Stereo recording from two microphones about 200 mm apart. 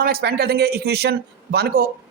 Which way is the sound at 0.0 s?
50° right (ahead or behind).